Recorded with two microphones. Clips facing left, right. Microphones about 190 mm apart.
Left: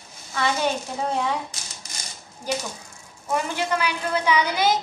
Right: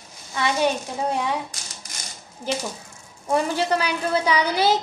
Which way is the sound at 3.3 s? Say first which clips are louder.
Right 3 dB; 35° right (ahead or behind).